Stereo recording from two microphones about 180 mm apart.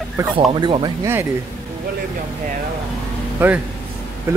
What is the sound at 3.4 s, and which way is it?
Speech, 10° right (ahead or behind).